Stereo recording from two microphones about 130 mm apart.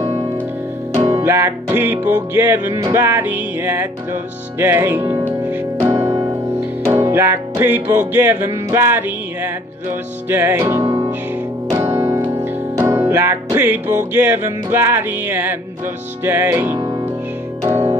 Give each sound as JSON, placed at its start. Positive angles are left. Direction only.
{"t": 1.2, "sound": "music", "side_deg": -20}